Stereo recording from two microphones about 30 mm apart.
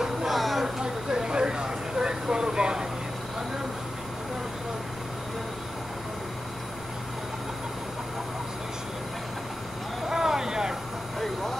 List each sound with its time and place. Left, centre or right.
0.3 s a sound: centre
0.8 s vehicle: right
10.0 s vehicle: centre